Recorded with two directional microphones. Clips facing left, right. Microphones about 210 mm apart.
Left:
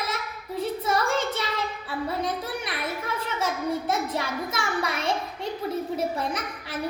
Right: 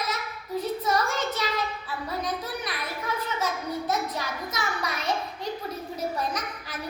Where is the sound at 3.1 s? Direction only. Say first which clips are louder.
Even; 30° left (ahead or behind).